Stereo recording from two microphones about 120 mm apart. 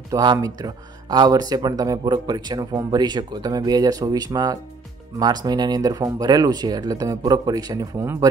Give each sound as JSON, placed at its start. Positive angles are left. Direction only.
{"t": 0.1, "sound": "speech", "side_deg": -35}